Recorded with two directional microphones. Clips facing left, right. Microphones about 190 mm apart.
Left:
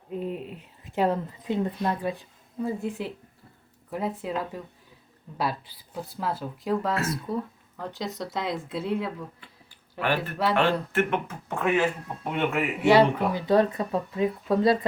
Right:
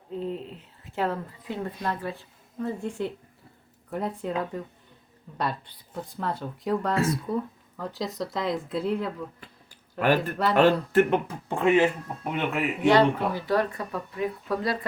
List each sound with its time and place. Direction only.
0.1 s speech: 15° left (ahead or behind)
10.0 s speech: 45° right (ahead or behind); by 11.9 s 25° right (ahead or behind)
12.2 s speech: centre (ahead or behind)
13.5 s speech: 20° left (ahead or behind)